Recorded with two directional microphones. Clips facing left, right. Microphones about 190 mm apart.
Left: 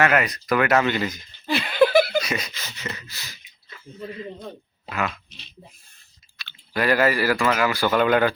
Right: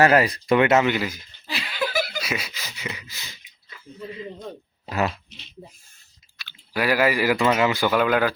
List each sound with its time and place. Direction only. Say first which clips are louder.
0.0 s speech: right 3 dB; 30° right (ahead or behind); by 1.2 s 10° right (ahead or behind)
1.5 s laughter: left 10 dB; 55° left (ahead or behind)
2.2 s gasp: left 1 dB; 5° right (ahead or behind)
4.9 s speech: right 3 dB; 35° right (ahead or behind)
6.4 s speech: left 1 dB; 10° right (ahead or behind)
7.9 s speech: left 3 dB; 5° right (ahead or behind)